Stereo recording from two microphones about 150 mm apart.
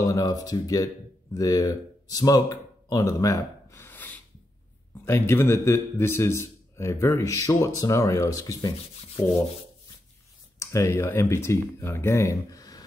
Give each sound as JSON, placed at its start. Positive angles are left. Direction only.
{"t": 0.0, "sound": "a man's voice", "side_deg": 25}
{"t": 10.6, "sound": "speech", "side_deg": 20}